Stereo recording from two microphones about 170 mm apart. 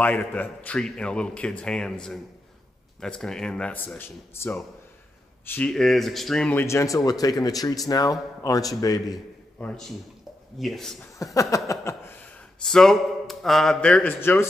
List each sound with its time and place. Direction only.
0.0 s a man's voice: 10° left (ahead or behind)
9.6 s a man's voice: 5° left (ahead or behind)
11.3 s a sound: 20° left (ahead or behind)
12.6 s a man's voice: centre (ahead or behind)